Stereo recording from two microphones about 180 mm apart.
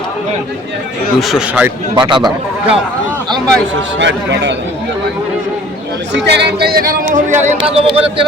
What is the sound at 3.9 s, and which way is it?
Speech, 80° right.